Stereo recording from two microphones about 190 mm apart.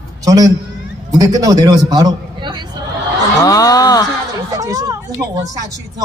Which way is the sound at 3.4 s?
20° left (ahead or behind).